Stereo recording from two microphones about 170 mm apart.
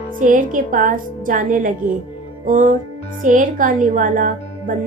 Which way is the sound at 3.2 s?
50° right (ahead or behind).